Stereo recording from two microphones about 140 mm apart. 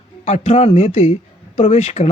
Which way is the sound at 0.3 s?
50° left (ahead or behind).